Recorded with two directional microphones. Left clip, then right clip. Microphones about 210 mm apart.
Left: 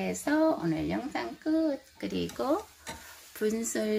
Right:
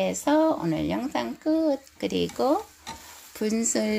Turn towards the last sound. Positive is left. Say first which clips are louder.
# right 4 dB
turn(degrees=-15)  # may be behind; listen again after turning